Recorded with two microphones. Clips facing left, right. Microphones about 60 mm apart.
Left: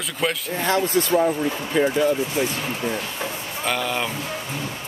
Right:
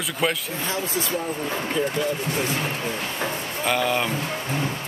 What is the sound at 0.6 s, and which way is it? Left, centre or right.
Speech, left.